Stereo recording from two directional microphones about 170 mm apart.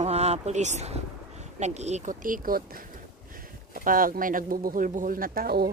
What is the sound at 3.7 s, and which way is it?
Speech, 55° right (ahead or behind).